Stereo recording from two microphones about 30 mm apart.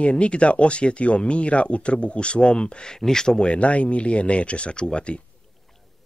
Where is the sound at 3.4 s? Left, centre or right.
Left.